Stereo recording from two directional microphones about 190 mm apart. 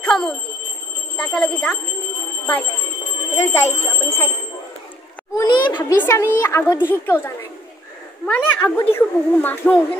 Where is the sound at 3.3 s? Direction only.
15° left (ahead or behind).